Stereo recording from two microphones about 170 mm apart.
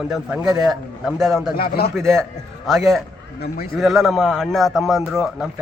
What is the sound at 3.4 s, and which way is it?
Speech, 65° left (ahead or behind).